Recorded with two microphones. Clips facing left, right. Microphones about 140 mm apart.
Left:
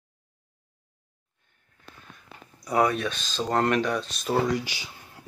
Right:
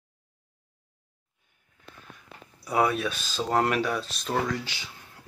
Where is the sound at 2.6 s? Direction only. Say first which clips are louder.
Left 1 dB; 5° right (ahead or behind).